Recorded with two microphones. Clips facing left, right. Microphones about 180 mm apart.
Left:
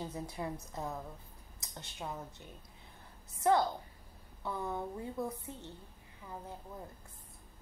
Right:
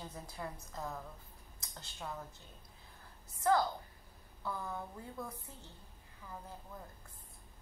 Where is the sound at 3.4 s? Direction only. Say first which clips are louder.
Left 2 dB; 20° left (ahead or behind).